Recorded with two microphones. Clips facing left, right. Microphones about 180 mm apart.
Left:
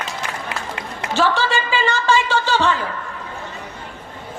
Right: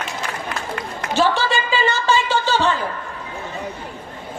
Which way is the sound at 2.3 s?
15° right (ahead or behind).